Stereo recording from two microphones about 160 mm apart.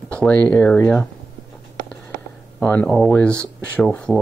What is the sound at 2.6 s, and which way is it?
Speech, 10° left (ahead or behind).